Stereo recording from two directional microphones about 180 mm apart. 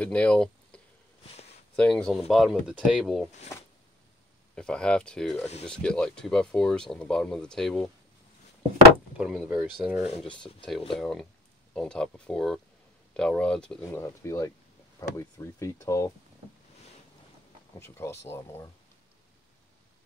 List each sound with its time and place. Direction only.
0.0 s speech: 5° left (ahead or behind)
1.3 s a sound: 35° left (ahead or behind)
1.8 s speech: 5° left (ahead or behind)
4.6 s speech: 5° left (ahead or behind)
9.2 s speech: centre (ahead or behind)
13.8 s speech: 15° left (ahead or behind)
17.7 s speech: 15° left (ahead or behind)